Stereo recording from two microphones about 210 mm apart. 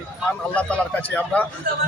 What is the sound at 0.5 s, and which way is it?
Speech, 5° left (ahead or behind).